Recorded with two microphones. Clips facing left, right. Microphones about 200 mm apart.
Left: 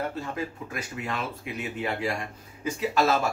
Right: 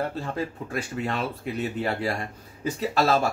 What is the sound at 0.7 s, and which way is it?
Speech, 35° right (ahead or behind).